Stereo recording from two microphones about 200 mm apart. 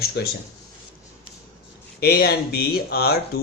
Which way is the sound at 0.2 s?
55° left (ahead or behind).